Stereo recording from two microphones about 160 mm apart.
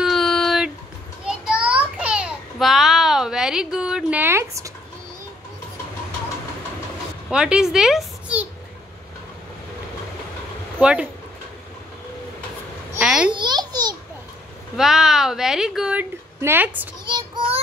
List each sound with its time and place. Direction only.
0.0 s a sound: centre (ahead or behind); by 4.7 s 20° right (ahead or behind)
7.2 s a child's voice: 5° right (ahead or behind)
10.8 s speech: 5° right (ahead or behind)
13.0 s babbling: 5° right (ahead or behind)
13.3 s babbling: 30° right (ahead or behind)
14.8 s a woman's voice: centre (ahead or behind)
17.0 s child singing: 30° right (ahead or behind)